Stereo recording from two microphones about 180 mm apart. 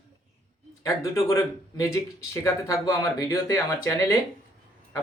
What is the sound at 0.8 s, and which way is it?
Speech, 15° left (ahead or behind).